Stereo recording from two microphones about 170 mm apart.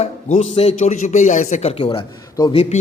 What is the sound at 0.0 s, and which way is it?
A man's voice, 40° left (ahead or behind).